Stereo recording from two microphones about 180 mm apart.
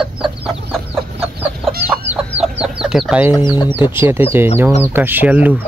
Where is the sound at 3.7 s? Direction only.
10° right (ahead or behind).